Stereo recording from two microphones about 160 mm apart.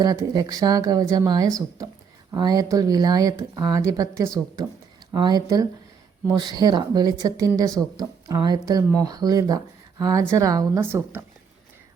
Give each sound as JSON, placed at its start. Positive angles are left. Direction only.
{"t": 0.0, "sound": "a woman's voice", "side_deg": -25}